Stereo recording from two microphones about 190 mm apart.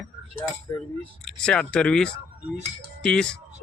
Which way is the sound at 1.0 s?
5° left (ahead or behind).